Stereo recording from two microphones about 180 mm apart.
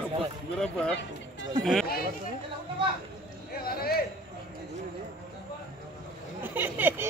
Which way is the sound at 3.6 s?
55° left (ahead or behind).